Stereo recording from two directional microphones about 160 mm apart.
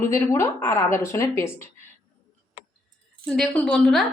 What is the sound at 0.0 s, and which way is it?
Speech, 15° left (ahead or behind).